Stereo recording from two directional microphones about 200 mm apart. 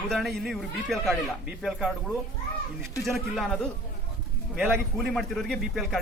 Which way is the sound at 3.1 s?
Centre (ahead or behind).